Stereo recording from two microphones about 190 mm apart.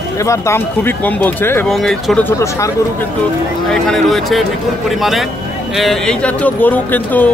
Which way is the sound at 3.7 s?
Centre (ahead or behind).